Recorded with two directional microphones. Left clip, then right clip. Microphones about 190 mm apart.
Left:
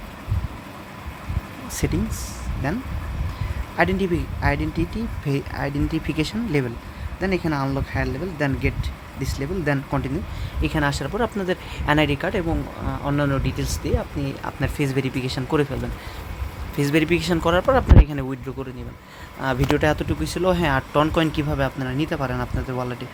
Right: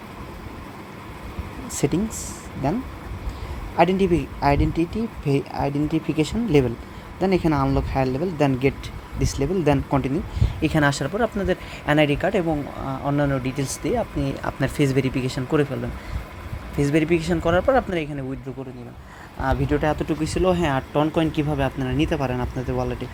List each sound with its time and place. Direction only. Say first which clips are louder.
1.7 s speech: right 3 dB; 5° right (ahead or behind)
3.8 s speech: right 3 dB; centre (ahead or behind)
6.5 s speech: right 8 dB; 10° right (ahead or behind)
11.2 s speech: even; centre (ahead or behind)
19.4 s speech: left 1 dB; 25° left (ahead or behind)
20.1 s speech: right 2 dB; centre (ahead or behind)
20.4 s speech: left 1 dB; 10° left (ahead or behind)